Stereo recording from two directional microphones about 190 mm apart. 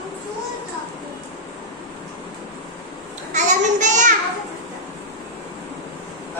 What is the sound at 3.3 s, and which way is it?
Child singing, 40° right (ahead or behind).